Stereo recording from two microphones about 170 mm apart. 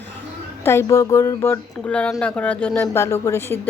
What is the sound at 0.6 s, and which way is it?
Speech, 15° left (ahead or behind).